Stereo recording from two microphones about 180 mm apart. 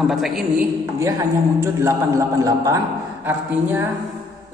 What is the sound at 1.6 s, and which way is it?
A man's voice, 15° right (ahead or behind).